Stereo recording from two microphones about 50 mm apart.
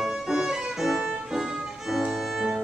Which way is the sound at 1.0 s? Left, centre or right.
Centre.